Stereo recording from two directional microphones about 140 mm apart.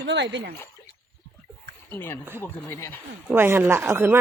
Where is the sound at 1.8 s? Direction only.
15° left (ahead or behind).